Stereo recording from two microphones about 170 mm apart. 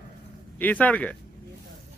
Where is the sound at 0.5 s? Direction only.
10° left (ahead or behind).